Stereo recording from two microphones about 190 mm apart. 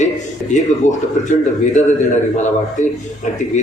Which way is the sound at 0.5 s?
40° left (ahead or behind).